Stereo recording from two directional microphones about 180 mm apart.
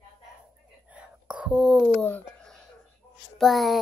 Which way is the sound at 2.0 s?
5° left (ahead or behind).